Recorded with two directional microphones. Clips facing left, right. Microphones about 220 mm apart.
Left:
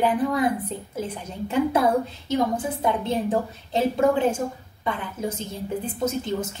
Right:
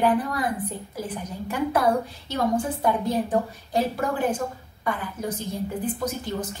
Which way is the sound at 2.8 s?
20° left (ahead or behind).